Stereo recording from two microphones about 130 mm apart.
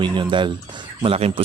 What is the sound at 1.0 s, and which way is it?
Speech, 50° right (ahead or behind).